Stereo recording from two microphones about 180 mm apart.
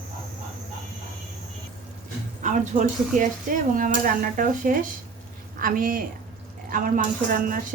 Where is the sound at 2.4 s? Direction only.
45° right (ahead or behind).